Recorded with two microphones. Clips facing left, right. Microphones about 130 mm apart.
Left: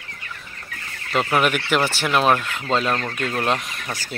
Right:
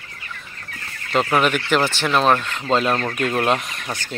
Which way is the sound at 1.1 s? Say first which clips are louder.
Right 2 dB; 5° left (ahead or behind).